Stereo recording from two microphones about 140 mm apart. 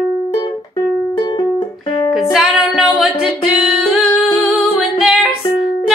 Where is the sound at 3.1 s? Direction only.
40° left (ahead or behind).